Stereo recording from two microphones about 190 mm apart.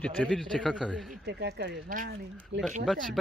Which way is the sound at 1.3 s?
60° right (ahead or behind).